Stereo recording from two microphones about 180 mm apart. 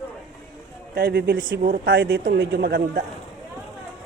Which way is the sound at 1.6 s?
50° right (ahead or behind).